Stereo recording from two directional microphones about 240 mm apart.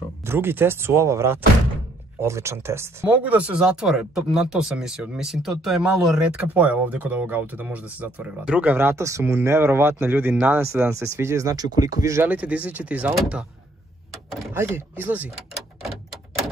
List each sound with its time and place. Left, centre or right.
0.2 s speech: centre
14.3 s door: centre
14.6 s speech: centre